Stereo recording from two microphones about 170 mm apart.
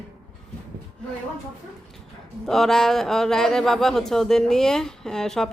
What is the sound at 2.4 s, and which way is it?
Speech, centre (ahead or behind).